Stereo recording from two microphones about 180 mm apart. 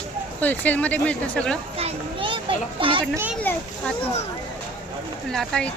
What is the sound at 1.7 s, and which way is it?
Children playing, 30° right (ahead or behind).